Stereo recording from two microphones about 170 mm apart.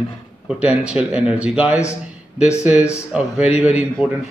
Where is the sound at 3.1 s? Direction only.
5° right (ahead or behind).